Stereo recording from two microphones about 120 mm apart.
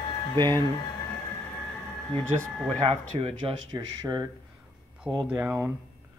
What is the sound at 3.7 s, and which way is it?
Speech, 35° right (ahead or behind).